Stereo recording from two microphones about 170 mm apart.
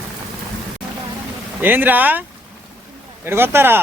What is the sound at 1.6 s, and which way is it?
Speech, 10° right (ahead or behind).